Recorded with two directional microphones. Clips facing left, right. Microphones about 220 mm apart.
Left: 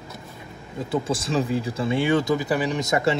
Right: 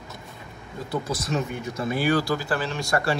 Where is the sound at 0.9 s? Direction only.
30° left (ahead or behind).